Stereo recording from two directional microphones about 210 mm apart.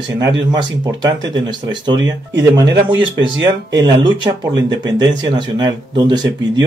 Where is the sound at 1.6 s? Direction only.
20° right (ahead or behind).